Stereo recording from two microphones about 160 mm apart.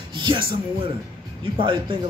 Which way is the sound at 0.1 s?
30° right (ahead or behind).